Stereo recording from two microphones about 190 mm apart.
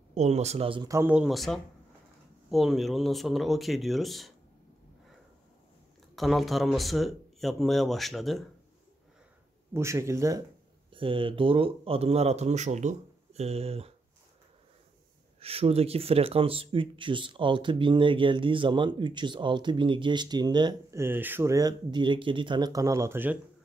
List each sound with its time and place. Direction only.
0.1 s speech: 35° right (ahead or behind)
0.9 s speech: 5° right (ahead or behind)
6.1 s speech: centre (ahead or behind)
9.8 s speech: 15° right (ahead or behind)
10.9 s speech: 25° right (ahead or behind)
15.4 s speech: 30° right (ahead or behind); by 23.4 s 10° right (ahead or behind)